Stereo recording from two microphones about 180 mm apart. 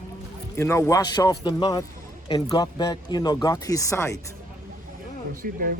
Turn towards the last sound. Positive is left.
turn(degrees=-55)  # may be behind; listen again after turning